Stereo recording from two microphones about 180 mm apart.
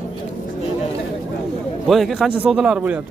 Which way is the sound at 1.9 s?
Centre (ahead or behind).